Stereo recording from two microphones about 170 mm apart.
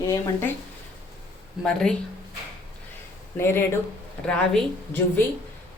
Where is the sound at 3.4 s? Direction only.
15° left (ahead or behind).